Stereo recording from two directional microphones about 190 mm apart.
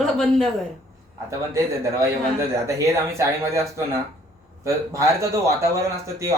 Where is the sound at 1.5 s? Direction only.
15° right (ahead or behind).